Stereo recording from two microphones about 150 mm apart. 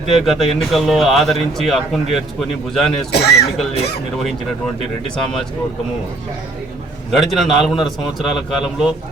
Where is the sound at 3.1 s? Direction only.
90° left.